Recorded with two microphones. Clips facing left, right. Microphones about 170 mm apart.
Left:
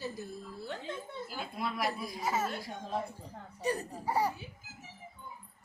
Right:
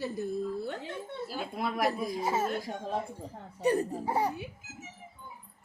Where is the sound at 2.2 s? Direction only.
30° right (ahead or behind).